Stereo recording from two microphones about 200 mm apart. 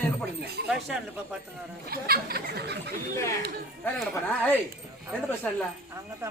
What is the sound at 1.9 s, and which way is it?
Speech, 50° right (ahead or behind).